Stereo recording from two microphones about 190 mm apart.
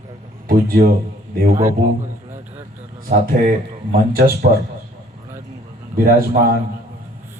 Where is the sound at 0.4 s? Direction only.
50° right (ahead or behind).